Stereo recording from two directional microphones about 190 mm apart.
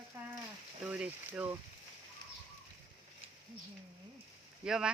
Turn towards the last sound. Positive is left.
turn(degrees=-5)  # may be behind; listen again after turning